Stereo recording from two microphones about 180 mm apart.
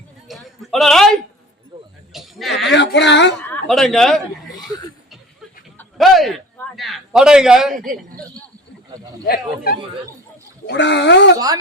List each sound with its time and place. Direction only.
0.3 s a sound: centre (ahead or behind)
2.1 s sheep: centre (ahead or behind)
2.7 s speech: 75° left (ahead or behind)
3.5 s a man's voice: centre (ahead or behind)
6.0 s a man's voice: centre (ahead or behind)
9.2 s speech: 55° left (ahead or behind)
10.7 s speech: 75° left (ahead or behind)